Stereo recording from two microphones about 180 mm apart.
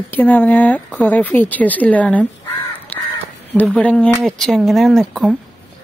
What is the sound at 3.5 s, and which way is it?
Speech, 5° left (ahead or behind).